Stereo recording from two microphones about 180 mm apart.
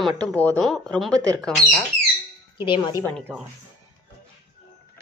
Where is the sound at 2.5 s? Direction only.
25° left (ahead or behind).